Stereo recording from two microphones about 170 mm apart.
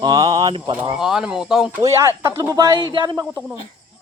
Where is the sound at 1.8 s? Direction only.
15° right (ahead or behind).